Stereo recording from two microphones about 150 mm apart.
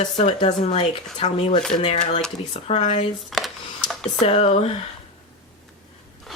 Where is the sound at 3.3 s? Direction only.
Centre (ahead or behind).